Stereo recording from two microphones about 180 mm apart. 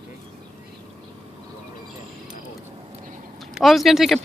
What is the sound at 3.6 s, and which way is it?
Speech, centre (ahead or behind).